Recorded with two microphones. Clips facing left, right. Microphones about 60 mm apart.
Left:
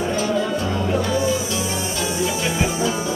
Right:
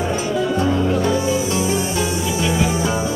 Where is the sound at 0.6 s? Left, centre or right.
Right.